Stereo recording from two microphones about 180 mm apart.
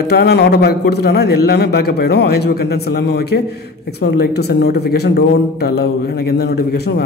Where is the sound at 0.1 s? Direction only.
65° left (ahead or behind).